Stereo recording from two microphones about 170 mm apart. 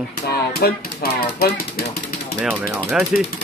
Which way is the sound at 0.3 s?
65° left (ahead or behind).